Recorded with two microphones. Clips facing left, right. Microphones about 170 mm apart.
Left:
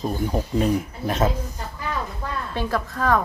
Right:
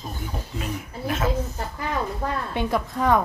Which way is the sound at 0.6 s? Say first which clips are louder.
Left 6 dB; 35° left (ahead or behind).